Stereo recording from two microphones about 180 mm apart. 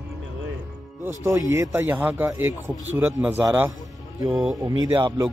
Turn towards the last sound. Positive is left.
turn(degrees=-25)  # may be behind; listen again after turning